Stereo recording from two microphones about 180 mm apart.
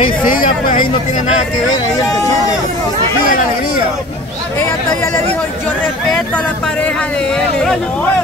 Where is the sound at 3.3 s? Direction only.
50° left (ahead or behind).